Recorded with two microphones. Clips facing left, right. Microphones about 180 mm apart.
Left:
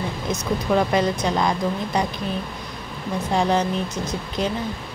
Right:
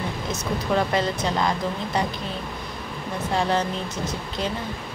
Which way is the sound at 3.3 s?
15° left (ahead or behind).